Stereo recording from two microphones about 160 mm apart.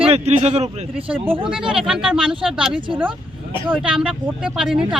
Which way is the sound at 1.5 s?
5° right (ahead or behind).